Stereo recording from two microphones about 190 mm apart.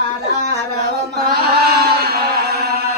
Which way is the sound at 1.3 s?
55° right (ahead or behind).